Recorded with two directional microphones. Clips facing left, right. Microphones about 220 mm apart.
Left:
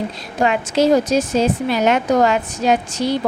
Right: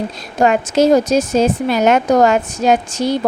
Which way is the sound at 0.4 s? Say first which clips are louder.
Right 3 dB; 45° right (ahead or behind).